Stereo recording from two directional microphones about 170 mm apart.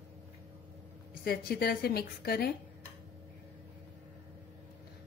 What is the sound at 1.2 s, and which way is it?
Speech, 65° left (ahead or behind).